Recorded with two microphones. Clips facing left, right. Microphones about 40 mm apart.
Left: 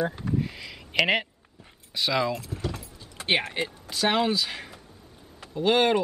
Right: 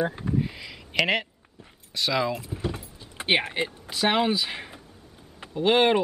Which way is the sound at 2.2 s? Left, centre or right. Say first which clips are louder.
Right 1 dB; centre.